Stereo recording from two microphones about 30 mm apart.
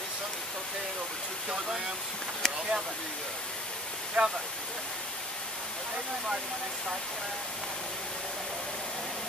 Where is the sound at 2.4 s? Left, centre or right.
Centre.